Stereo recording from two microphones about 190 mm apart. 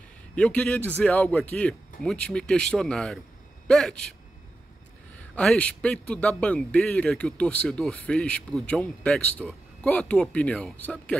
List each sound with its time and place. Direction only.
0.4 s a man's voice: 5° left (ahead or behind)
5.3 s a man's voice: 5° left (ahead or behind)